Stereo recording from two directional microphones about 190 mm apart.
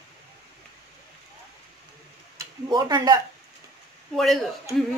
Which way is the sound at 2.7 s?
20° right (ahead or behind).